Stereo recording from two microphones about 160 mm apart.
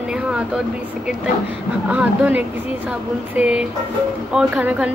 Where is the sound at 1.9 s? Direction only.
10° right (ahead or behind).